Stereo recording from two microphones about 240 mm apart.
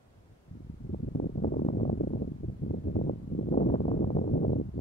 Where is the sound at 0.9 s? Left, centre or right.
Left.